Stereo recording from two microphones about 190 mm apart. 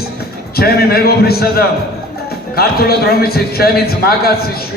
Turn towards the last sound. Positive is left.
turn(degrees=55)  # may be behind; listen again after turning